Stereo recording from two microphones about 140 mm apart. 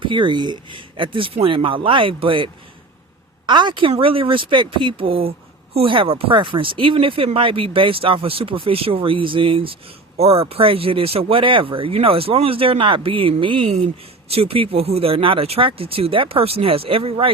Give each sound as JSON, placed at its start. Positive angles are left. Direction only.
{"t": 0.0, "sound": "speech", "side_deg": -35}